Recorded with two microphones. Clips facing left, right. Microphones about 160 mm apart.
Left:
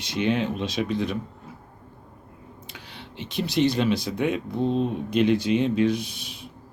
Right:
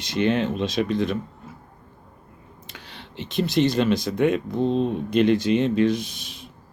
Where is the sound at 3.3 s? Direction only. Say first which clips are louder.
Right 4 dB; 50° right (ahead or behind).